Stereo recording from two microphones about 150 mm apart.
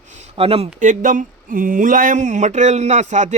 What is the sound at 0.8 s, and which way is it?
Speech, 60° right (ahead or behind).